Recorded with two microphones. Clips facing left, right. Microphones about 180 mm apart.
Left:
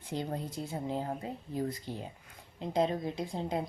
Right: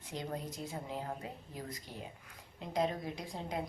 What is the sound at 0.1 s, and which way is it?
A woman's voice, 30° left (ahead or behind).